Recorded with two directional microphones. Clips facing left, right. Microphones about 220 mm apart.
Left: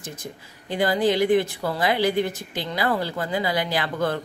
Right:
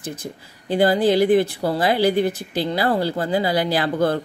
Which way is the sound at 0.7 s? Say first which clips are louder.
Right 4 dB; 35° right (ahead or behind).